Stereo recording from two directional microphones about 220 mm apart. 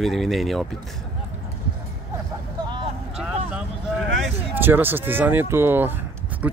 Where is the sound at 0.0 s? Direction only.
Centre (ahead or behind).